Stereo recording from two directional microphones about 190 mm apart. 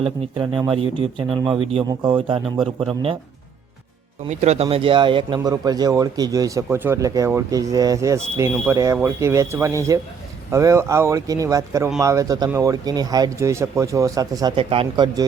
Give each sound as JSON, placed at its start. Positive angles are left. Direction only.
{"t": 0.0, "sound": "speech", "side_deg": -25}
{"t": 4.3, "sound": "speech", "side_deg": -35}